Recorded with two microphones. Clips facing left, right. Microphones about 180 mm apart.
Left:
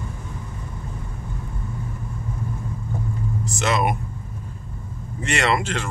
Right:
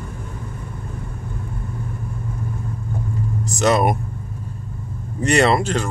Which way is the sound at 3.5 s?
40° right (ahead or behind).